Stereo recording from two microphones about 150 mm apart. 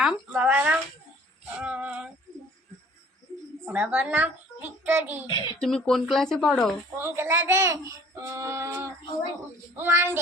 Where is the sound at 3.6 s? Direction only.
10° right (ahead or behind).